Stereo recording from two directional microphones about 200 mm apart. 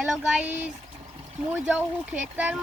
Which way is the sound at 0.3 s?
5° right (ahead or behind).